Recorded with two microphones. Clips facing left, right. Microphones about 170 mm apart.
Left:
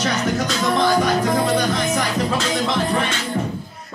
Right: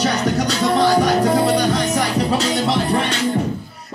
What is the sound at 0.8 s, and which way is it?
Music, 35° right (ahead or behind).